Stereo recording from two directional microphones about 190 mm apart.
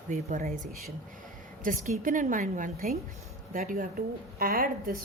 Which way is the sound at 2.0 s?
45° right (ahead or behind).